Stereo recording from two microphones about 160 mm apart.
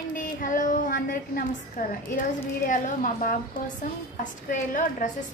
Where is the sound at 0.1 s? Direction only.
55° left (ahead or behind).